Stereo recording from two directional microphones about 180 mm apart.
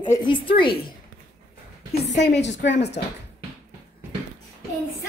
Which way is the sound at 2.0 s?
70° left (ahead or behind).